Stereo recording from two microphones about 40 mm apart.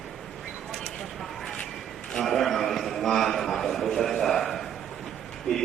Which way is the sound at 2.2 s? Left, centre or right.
Centre.